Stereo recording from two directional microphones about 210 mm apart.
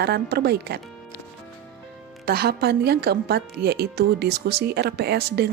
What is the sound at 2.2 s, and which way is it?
A woman's voice, 50° right (ahead or behind).